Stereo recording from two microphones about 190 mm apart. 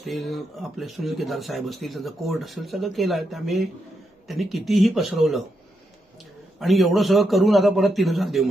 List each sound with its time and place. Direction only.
0.0 s speech: centre (ahead or behind)
6.6 s speech: centre (ahead or behind)